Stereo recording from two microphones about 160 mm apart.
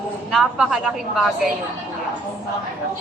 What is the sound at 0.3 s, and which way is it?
Speech, centre (ahead or behind).